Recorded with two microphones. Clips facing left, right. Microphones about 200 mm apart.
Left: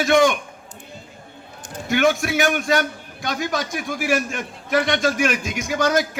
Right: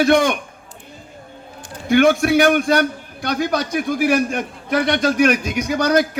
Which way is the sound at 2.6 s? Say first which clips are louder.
Right 4 dB; 50° right (ahead or behind).